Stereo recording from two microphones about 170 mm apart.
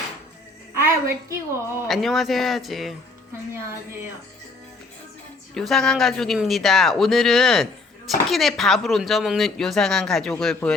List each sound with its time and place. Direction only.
0.9 s a woman's voice: 15° right (ahead or behind)
1.9 s speech: centre (ahead or behind)
5.5 s speech: centre (ahead or behind)